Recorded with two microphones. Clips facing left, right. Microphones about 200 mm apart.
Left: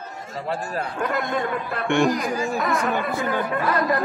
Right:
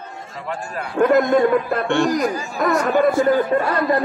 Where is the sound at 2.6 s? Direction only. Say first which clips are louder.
Right 7 dB; 45° right (ahead or behind).